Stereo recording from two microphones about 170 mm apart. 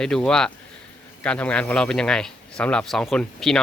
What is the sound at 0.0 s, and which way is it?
Speech, 5° left (ahead or behind).